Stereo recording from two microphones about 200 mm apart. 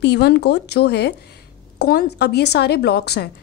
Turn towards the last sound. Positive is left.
turn(degrees=55)  # may be behind; listen again after turning